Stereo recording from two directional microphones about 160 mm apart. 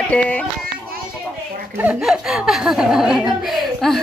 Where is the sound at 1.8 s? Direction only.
10° right (ahead or behind).